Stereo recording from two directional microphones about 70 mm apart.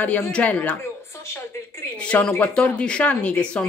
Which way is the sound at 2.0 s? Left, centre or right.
Centre.